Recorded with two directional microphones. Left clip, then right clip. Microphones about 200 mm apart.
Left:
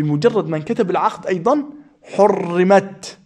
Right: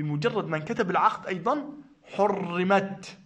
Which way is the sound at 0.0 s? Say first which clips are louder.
Left 12 dB; 30° left (ahead or behind).